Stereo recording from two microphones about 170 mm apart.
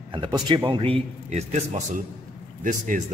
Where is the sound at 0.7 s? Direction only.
35° right (ahead or behind).